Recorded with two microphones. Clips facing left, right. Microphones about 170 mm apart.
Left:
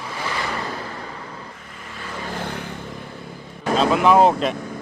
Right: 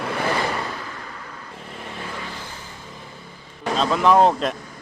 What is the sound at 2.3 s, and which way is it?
Vehicle, 65° left (ahead or behind).